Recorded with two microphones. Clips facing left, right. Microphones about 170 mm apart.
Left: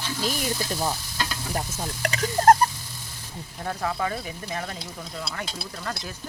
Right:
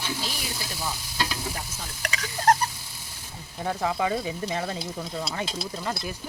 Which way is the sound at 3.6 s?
15° right (ahead or behind).